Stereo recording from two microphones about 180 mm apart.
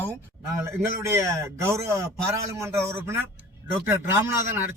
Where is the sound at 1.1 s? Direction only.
15° right (ahead or behind).